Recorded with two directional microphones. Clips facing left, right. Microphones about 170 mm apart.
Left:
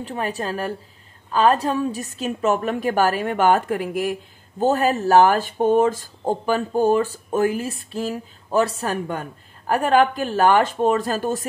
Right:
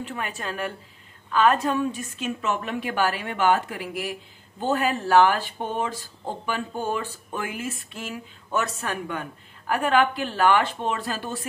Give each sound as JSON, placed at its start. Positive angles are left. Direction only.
{"t": 0.0, "sound": "a woman's voice", "side_deg": 35}